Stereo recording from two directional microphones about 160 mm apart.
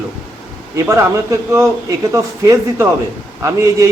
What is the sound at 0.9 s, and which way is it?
A man's voice, 20° right (ahead or behind).